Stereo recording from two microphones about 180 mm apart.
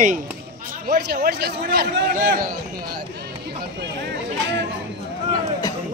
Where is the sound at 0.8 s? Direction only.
55° right (ahead or behind).